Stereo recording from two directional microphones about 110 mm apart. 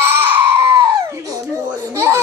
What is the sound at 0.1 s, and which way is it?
Baby cry, 25° right (ahead or behind).